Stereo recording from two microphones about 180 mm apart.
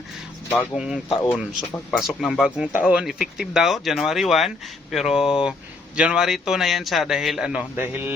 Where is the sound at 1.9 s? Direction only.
Centre (ahead or behind).